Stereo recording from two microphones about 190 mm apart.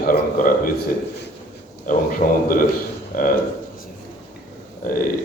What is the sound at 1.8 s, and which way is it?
Speech, 45° left (ahead or behind).